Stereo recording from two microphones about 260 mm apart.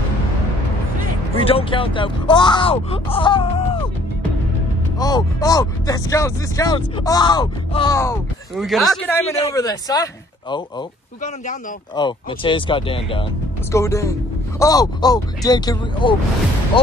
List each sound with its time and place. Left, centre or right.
1.3 s speech: left
4.9 s speech: centre
8.5 s speech: centre
11.9 s speech: centre